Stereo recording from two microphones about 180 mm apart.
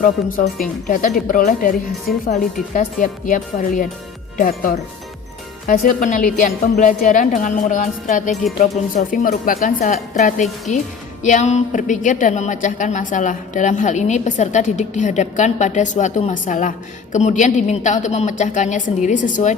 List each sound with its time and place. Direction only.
0.0 s a woman's voice: 50° left (ahead or behind)